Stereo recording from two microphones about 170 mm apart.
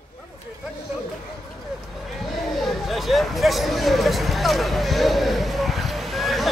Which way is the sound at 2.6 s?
Centre (ahead or behind).